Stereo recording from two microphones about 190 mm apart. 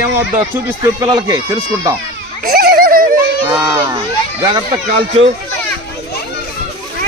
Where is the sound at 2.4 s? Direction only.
55° right (ahead or behind).